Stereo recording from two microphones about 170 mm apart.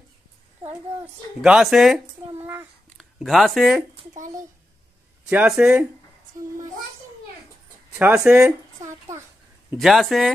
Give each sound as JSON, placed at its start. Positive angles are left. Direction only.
{"t": 1.4, "sound": "speech", "side_deg": -5}
{"t": 2.3, "sound": "a sound", "side_deg": -10}
{"t": 3.0, "sound": "speech", "side_deg": 0}
{"t": 5.3, "sound": "speech", "side_deg": -5}
{"t": 8.2, "sound": "a sound", "side_deg": -10}
{"t": 9.8, "sound": "speech", "side_deg": 0}